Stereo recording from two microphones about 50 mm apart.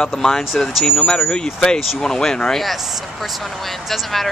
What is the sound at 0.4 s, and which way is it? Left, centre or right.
Speech, centre.